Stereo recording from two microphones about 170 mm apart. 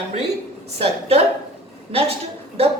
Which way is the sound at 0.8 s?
35° right (ahead or behind).